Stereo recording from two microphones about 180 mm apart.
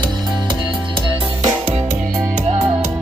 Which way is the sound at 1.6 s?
35° right (ahead or behind).